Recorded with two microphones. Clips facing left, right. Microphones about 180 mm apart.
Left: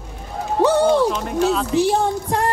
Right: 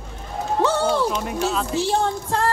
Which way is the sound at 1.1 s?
10° right (ahead or behind).